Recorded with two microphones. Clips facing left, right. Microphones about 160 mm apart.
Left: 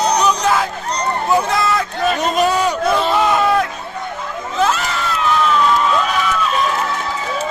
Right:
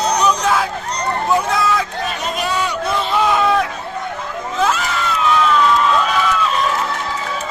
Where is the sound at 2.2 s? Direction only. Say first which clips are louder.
Left 4 dB; 45° left (ahead or behind).